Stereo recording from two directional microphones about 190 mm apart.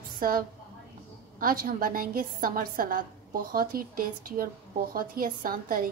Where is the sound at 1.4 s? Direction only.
45° right (ahead or behind).